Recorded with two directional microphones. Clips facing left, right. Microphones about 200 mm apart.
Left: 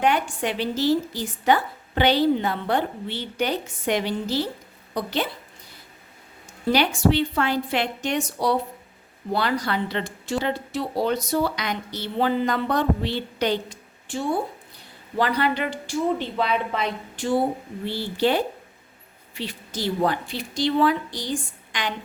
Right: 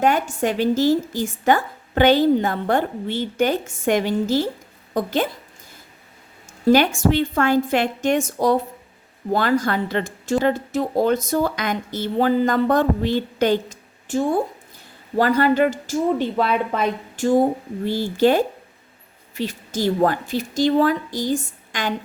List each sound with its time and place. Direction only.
0.0 s speech: 45° right (ahead or behind)
6.7 s a woman's voice: 50° right (ahead or behind)